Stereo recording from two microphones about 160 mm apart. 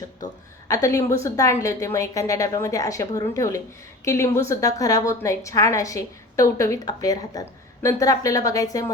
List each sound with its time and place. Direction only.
0.7 s a woman's voice: 20° left (ahead or behind)